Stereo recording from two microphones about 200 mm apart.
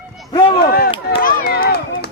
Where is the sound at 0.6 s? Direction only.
50° left (ahead or behind).